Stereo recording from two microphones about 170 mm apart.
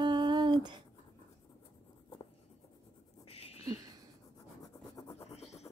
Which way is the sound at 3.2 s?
35° left (ahead or behind).